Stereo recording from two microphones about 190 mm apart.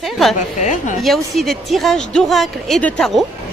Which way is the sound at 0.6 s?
40° left (ahead or behind).